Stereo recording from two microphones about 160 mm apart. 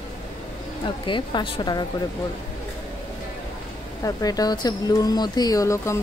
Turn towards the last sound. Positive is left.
turn(degrees=20)  # may be behind; listen again after turning